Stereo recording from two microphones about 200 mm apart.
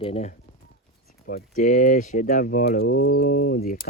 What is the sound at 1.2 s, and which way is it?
Speech, 45° left (ahead or behind).